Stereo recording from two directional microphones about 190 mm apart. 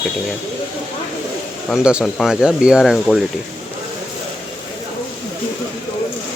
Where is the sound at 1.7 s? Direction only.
5° right (ahead or behind).